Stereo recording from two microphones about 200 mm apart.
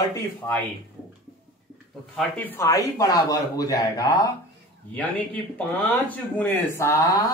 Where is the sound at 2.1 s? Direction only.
10° left (ahead or behind).